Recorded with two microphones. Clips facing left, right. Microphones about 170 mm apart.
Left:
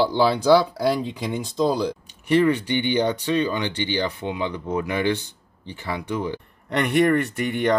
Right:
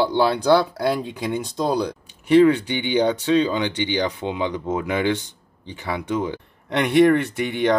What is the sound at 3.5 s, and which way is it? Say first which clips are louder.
Speech: right 2 dB; 15° right (ahead or behind).